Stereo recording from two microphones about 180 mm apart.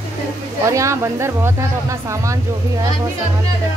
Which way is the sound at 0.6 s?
15° right (ahead or behind).